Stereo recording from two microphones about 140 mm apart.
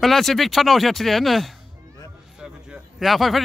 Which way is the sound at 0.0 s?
Centre (ahead or behind).